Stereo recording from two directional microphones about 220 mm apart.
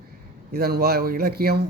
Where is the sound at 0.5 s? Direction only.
45° right (ahead or behind).